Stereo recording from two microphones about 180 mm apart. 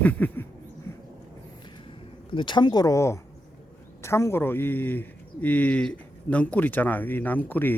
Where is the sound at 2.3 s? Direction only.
25° left (ahead or behind); by 7.7 s 10° left (ahead or behind).